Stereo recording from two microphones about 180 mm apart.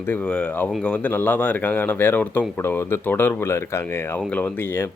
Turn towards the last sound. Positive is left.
turn(degrees=10)  # may be behind; listen again after turning